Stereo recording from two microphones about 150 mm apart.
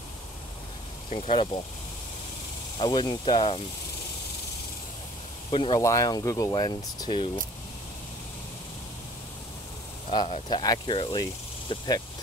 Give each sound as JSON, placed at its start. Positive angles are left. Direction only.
{"t": 1.3, "sound": "speech", "side_deg": 35}
{"t": 2.8, "sound": "speech", "side_deg": 30}
{"t": 5.5, "sound": "speech", "side_deg": 35}
{"t": 5.8, "sound": "speech", "side_deg": 20}
{"t": 10.1, "sound": "speech", "side_deg": 30}